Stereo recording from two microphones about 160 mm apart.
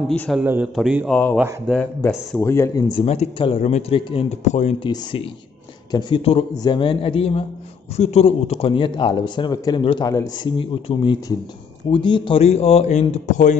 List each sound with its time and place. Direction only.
0.1 s speech: 10° left (ahead or behind)
0.4 s a man's voice: 10° right (ahead or behind)
2.3 s speech: 15° left (ahead or behind)
2.9 s a man's voice: 35° left (ahead or behind)
4.8 s a man's voice: 30° left (ahead or behind); by 13.6 s 50° left (ahead or behind)